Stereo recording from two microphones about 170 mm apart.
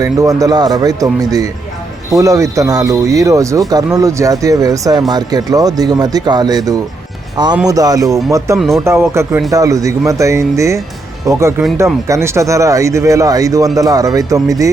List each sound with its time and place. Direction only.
0.0 s speech: 20° right (ahead or behind)
8.5 s speech: centre (ahead or behind)
8.8 s speech: 15° right (ahead or behind)